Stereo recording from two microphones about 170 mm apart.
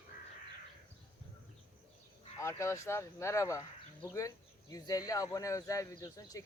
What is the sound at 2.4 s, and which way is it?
Speech, 15° left (ahead or behind).